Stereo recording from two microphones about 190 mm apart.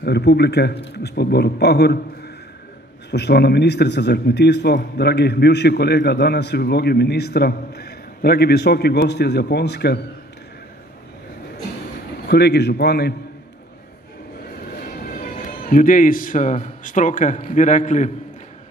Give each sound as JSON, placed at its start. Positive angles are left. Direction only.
{"t": 0.0, "sound": "a man's voice", "side_deg": 60}
{"t": 12.3, "sound": "a man's voice", "side_deg": 60}
{"t": 14.8, "sound": "a man's voice", "side_deg": 50}